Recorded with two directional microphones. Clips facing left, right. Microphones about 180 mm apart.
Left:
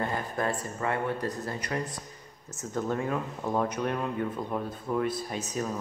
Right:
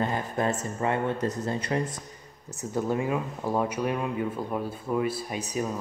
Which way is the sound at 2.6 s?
10° right (ahead or behind).